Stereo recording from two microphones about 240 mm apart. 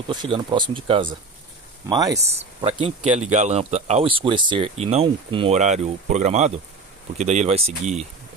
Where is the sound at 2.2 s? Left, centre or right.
Right.